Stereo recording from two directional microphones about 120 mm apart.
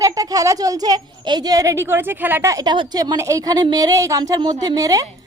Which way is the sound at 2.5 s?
30° right (ahead or behind).